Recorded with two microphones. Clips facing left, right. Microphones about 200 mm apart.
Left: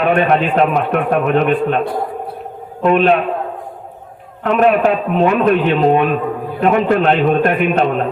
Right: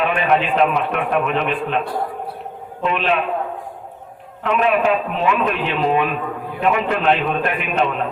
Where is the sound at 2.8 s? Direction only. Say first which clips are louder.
Left 8 dB; 45° left (ahead or behind).